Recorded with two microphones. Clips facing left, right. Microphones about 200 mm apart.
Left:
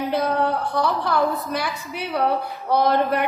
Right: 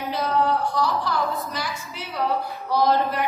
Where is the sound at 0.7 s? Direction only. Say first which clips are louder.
Left 2 dB; 60° left (ahead or behind).